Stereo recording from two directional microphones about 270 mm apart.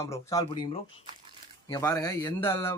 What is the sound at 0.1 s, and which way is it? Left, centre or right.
Speech, centre.